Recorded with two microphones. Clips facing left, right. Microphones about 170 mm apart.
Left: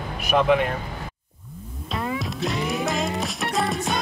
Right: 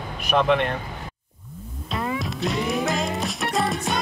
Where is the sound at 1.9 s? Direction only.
Centre (ahead or behind).